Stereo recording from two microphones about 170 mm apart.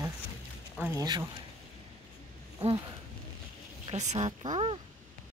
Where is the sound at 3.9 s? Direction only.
40° right (ahead or behind).